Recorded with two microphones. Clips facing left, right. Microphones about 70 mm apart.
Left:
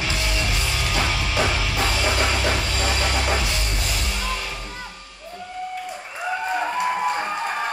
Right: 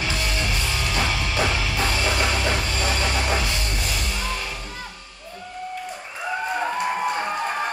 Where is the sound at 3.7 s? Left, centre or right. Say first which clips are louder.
Even; left.